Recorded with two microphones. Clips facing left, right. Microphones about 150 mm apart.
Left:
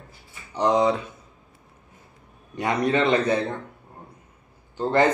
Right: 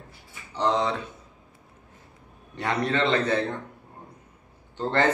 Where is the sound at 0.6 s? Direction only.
15° left (ahead or behind).